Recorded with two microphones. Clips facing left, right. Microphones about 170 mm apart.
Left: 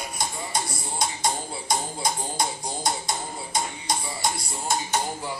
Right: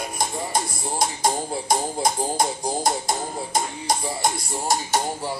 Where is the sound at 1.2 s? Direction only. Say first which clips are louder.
Right 6 dB; 50° right (ahead or behind).